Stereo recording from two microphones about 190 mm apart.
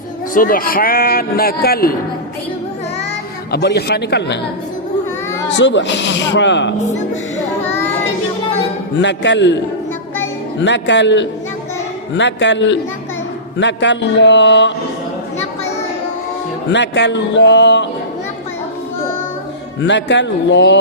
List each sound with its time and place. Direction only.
0.3 s speech: 45° left (ahead or behind)
3.5 s a man's voice: 60° left (ahead or behind)
5.5 s speech: 70° left (ahead or behind)
9.0 s speech: 70° left (ahead or behind)
10.6 s speech: 70° left (ahead or behind)
16.7 s speech: 65° left (ahead or behind)
19.8 s speech: 65° left (ahead or behind)